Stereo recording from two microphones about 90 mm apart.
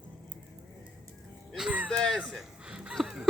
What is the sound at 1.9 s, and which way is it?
Speech, 5° left (ahead or behind).